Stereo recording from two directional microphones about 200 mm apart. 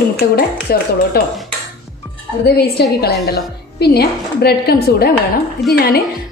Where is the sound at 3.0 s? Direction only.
55° left (ahead or behind).